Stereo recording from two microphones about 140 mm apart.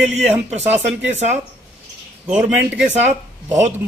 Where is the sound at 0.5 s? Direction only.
55° right (ahead or behind).